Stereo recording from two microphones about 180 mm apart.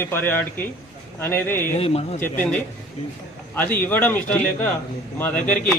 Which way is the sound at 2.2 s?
10° left (ahead or behind).